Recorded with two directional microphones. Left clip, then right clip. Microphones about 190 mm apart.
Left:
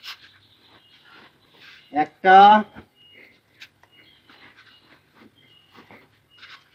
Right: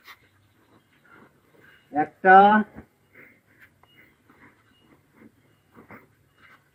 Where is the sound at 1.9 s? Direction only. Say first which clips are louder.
Left 1 dB; 50° left (ahead or behind).